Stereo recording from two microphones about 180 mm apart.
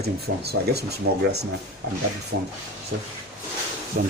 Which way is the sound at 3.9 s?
55° right (ahead or behind).